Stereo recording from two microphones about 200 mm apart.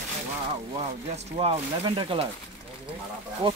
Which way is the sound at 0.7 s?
30° right (ahead or behind).